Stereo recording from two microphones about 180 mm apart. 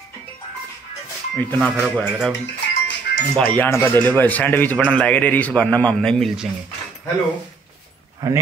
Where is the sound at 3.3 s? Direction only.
10° left (ahead or behind).